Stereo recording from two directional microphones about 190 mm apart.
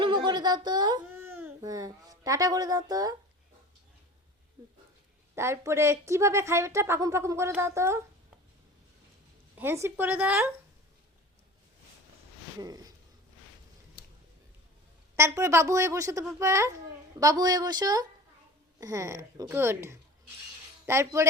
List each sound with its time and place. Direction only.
0.0 s speech: 25° right (ahead or behind)
1.1 s speech: 10° right (ahead or behind)
5.3 s a woman's voice: 15° right (ahead or behind)
9.6 s a woman's voice: 15° right (ahead or behind)
12.5 s speech: 20° right (ahead or behind)
15.1 s a woman's voice: 15° right (ahead or behind)